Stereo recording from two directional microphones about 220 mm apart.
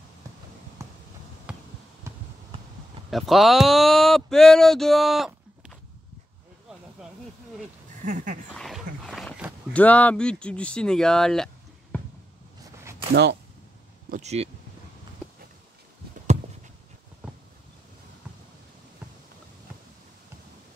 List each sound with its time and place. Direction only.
0.8 s a sound: 15° right (ahead or behind)
1.5 s basketball bounce: 5° right (ahead or behind)
3.1 s speech: centre (ahead or behind)
8.0 s a sound: 35° right (ahead or behind)
8.5 s speech: centre (ahead or behind)
13.1 s speech: 50° right (ahead or behind)
14.1 s speech: 30° right (ahead or behind)